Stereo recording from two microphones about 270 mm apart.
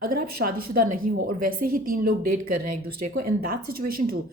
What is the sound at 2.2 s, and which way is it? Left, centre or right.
Speech, right.